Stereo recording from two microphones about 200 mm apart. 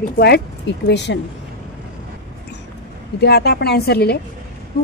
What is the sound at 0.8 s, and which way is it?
Speech, 60° left (ahead or behind).